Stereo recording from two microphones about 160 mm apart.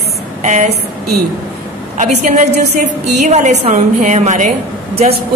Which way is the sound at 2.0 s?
50° right (ahead or behind).